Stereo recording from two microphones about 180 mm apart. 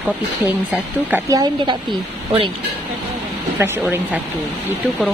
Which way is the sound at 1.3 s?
20° right (ahead or behind).